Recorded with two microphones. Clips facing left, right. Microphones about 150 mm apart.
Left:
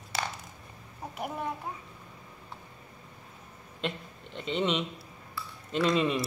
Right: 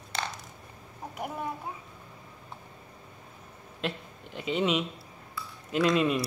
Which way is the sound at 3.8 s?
5° right (ahead or behind).